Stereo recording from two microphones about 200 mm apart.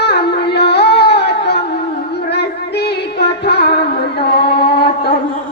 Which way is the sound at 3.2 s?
55° left (ahead or behind).